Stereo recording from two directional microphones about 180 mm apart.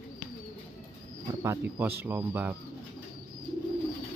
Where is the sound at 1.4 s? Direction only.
15° right (ahead or behind).